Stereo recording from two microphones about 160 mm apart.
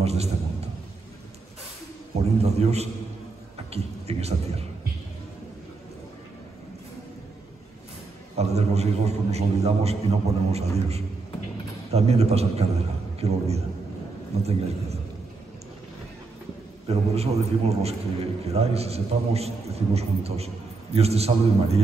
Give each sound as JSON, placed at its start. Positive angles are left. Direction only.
{"t": 0.0, "sound": "a sound", "side_deg": -40}
{"t": 2.1, "sound": "a man's voice", "side_deg": -40}
{"t": 8.4, "sound": "a man's voice", "side_deg": -40}
{"t": 16.8, "sound": "a man's voice", "side_deg": -40}